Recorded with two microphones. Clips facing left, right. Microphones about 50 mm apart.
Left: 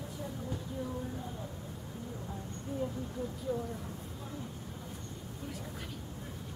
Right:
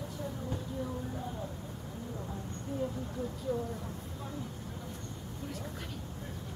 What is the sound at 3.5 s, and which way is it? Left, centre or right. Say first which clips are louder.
Speech: right 1 dB; centre.